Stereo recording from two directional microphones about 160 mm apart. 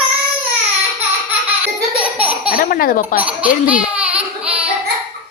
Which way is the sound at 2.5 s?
65° left (ahead or behind).